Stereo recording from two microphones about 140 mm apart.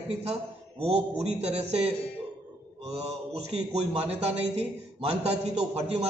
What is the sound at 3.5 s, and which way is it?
A man's voice, 50° right (ahead or behind).